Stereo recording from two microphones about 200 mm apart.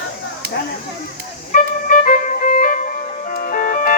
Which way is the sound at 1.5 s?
40° left (ahead or behind).